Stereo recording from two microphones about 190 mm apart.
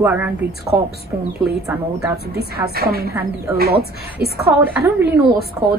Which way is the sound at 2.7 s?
55° right (ahead or behind).